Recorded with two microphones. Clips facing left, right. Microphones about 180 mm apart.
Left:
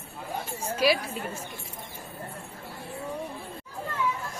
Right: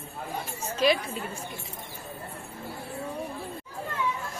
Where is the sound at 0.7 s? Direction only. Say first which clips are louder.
Even; 10° left (ahead or behind).